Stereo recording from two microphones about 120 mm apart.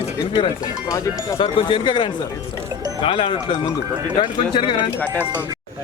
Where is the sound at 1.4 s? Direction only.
45° left (ahead or behind).